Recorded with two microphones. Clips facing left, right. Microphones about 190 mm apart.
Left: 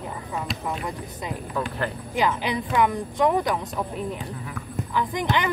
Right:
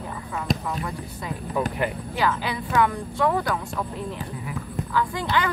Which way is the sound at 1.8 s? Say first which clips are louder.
Right 2 dB; 15° right (ahead or behind).